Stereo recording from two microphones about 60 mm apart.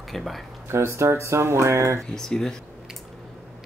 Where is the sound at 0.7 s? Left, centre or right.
Right.